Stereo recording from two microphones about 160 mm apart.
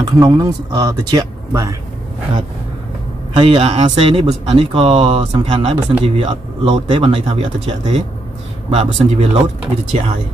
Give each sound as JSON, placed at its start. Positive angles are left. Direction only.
{"t": 0.0, "sound": "speech", "side_deg": -25}
{"t": 3.3, "sound": "speech", "side_deg": -35}